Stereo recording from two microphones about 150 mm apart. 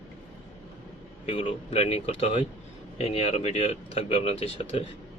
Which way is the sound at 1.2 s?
35° left (ahead or behind).